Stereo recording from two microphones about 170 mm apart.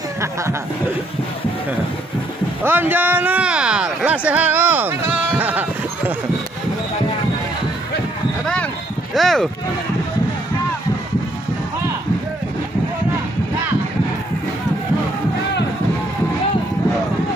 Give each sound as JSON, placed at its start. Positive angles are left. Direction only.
{"t": 0.2, "sound": "speech", "side_deg": -15}
{"t": 2.6, "sound": "speech", "side_deg": -15}
{"t": 9.1, "sound": "speech", "side_deg": 0}